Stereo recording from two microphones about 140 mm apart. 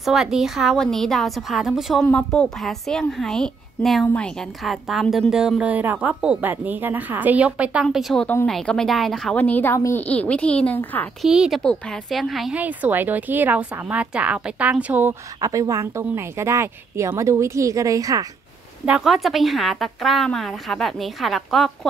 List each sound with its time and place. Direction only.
0.0 s a woman's voice: centre (ahead or behind); by 10.0 s 20° left (ahead or behind)
10.0 s a woman's voice: 10° left (ahead or behind)
11.2 s a woman's voice: centre (ahead or behind)
15.4 s a woman's voice: 25° right (ahead or behind)
18.9 s speech: 5° right (ahead or behind)